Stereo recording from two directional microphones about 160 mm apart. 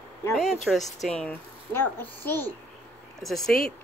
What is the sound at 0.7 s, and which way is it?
A child's voice, centre (ahead or behind).